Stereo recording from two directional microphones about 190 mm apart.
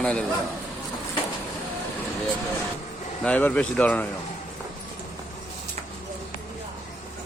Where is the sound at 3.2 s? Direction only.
5° left (ahead or behind).